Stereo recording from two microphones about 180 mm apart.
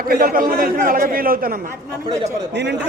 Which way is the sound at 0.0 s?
55° right (ahead or behind).